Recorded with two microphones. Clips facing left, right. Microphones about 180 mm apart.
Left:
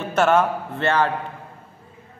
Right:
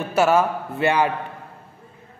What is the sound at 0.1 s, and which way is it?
A man's voice, 5° right (ahead or behind).